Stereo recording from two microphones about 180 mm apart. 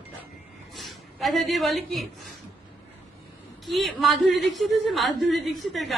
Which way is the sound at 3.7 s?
Centre (ahead or behind).